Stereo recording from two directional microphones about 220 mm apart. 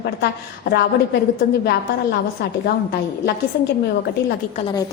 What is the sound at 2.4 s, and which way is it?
Speech, 50° left (ahead or behind).